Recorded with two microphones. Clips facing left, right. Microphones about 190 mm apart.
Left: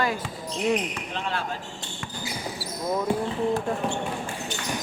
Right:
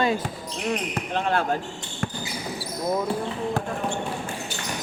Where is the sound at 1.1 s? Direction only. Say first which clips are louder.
Right 8 dB; 50° right (ahead or behind).